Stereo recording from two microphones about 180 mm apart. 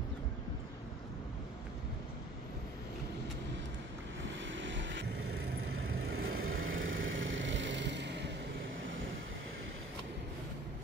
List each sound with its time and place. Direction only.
4.2 s vehicle: 90° right
6.0 s vehicle: 90° right; by 8.3 s 75° right (ahead or behind)